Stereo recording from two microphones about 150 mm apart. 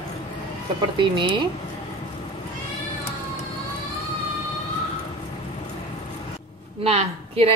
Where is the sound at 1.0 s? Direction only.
30° right (ahead or behind).